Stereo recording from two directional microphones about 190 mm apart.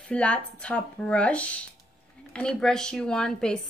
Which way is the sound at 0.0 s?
5° left (ahead or behind).